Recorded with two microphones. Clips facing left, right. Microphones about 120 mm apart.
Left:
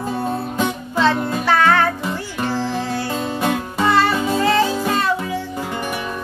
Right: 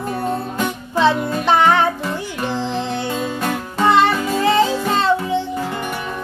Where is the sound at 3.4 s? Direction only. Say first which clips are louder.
Left 1 dB; 15° left (ahead or behind).